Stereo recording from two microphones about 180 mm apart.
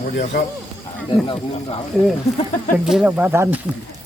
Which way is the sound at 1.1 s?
25° left (ahead or behind).